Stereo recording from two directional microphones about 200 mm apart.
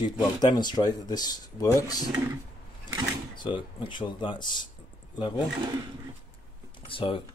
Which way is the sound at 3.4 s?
25° left (ahead or behind).